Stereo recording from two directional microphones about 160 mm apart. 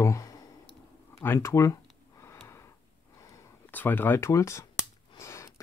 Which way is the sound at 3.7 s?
10° left (ahead or behind).